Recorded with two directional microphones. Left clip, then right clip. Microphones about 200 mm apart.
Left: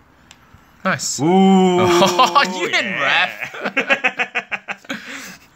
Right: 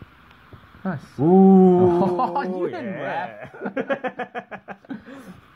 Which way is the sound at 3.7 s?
25° right (ahead or behind).